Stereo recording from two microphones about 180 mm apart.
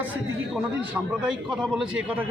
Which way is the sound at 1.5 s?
Centre (ahead or behind).